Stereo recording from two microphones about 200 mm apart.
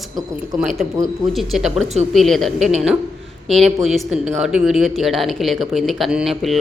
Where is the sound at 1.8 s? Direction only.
35° right (ahead or behind).